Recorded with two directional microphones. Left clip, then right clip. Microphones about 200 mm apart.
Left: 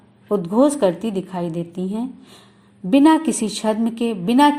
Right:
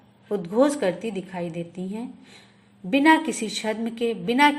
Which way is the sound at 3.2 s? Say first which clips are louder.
Left 6 dB; 20° left (ahead or behind).